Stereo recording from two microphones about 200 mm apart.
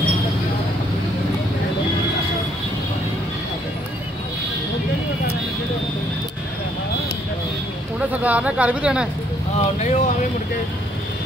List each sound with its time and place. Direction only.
8.1 s speech: 5° right (ahead or behind)
9.6 s speech: 35° left (ahead or behind)